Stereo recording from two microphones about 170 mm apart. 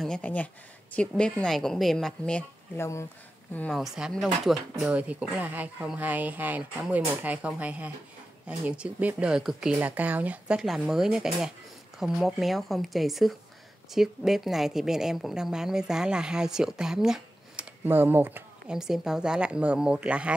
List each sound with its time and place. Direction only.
0.0 s a woman's voice: 5° left (ahead or behind)
2.8 s speech: 15° left (ahead or behind)
3.5 s a woman's voice: 5° left (ahead or behind)